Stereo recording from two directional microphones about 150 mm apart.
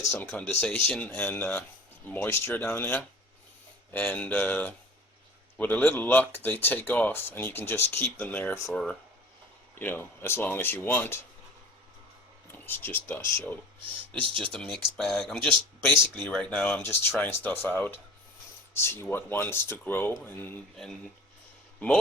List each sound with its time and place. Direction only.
0.1 s speech: 10° left (ahead or behind)
12.5 s speech: 15° left (ahead or behind)